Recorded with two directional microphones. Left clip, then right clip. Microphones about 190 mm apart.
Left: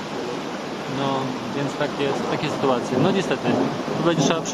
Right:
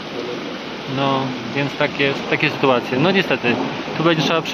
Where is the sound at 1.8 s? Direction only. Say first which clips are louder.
Right 5 dB; 20° right (ahead or behind).